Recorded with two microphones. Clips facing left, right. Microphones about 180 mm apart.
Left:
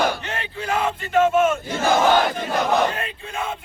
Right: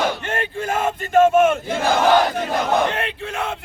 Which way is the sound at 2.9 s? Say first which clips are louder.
Right 4 dB; 75° right (ahead or behind).